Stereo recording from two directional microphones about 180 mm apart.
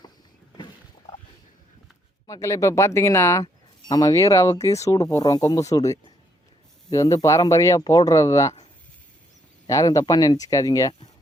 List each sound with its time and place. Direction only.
2.2 s speech: 15° left (ahead or behind)
9.6 s speech: 20° left (ahead or behind)